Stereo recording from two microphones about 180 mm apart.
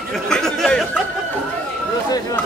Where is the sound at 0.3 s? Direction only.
5° left (ahead or behind).